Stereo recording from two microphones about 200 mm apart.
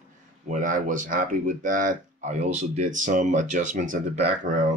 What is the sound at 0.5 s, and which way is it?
Speech, 40° right (ahead or behind).